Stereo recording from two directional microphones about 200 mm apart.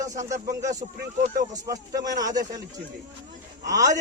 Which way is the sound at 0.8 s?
30° right (ahead or behind).